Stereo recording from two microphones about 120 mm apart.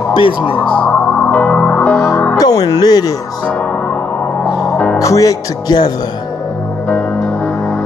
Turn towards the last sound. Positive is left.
turn(degrees=35)  # may be behind; listen again after turning